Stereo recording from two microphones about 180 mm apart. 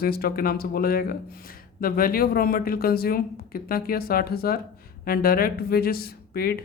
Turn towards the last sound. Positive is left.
turn(degrees=55)  # may be behind; listen again after turning